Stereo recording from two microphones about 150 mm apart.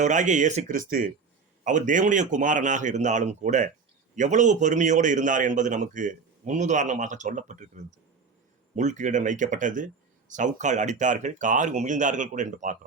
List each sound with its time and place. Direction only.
0.0 s speech: 55° right (ahead or behind)
8.7 s speech: 55° right (ahead or behind)